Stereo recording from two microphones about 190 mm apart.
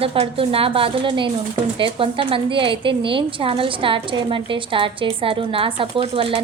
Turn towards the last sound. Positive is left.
turn(degrees=-30)  # may be behind; listen again after turning